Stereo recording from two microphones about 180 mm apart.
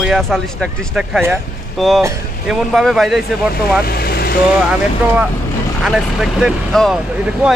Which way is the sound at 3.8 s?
60° left (ahead or behind).